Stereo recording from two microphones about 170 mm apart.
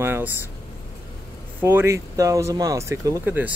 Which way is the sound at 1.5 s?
10° right (ahead or behind).